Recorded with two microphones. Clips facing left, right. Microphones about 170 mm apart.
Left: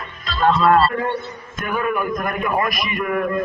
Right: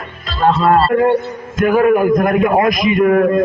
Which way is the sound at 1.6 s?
75° right (ahead or behind).